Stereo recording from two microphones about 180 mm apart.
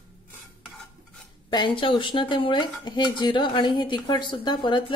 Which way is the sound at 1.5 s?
25° left (ahead or behind).